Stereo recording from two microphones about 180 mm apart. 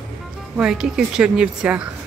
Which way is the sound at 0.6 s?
5° right (ahead or behind).